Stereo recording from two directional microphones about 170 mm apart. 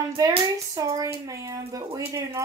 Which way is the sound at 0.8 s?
20° right (ahead or behind).